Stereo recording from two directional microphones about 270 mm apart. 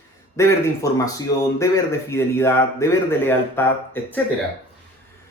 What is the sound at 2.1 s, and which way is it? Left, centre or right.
Speech, centre.